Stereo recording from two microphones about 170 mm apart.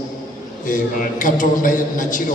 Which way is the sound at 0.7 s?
50° left (ahead or behind).